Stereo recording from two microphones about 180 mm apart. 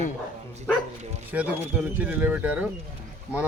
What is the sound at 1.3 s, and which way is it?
Speech, 10° right (ahead or behind).